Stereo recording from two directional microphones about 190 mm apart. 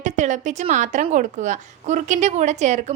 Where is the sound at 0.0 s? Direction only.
40° right (ahead or behind).